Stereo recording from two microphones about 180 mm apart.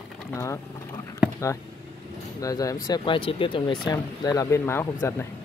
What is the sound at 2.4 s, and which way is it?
Speech, 20° left (ahead or behind).